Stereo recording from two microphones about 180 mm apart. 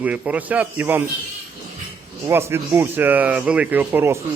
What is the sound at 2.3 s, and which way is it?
Speech, 15° right (ahead or behind).